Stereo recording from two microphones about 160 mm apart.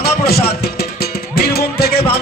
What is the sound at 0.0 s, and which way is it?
Music, 80° left.